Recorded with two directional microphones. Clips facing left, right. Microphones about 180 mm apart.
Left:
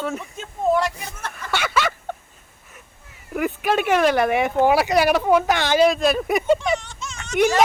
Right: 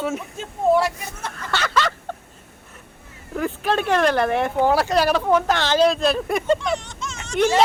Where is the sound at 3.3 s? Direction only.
10° left (ahead or behind).